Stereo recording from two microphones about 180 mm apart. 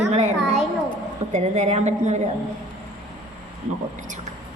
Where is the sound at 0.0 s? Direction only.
40° right (ahead or behind).